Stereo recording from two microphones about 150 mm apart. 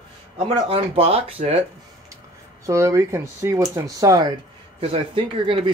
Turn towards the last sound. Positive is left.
turn(degrees=-35)  # may be behind; listen again after turning